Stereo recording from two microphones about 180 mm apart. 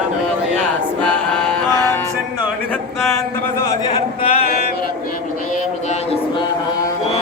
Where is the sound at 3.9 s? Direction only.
35° left (ahead or behind).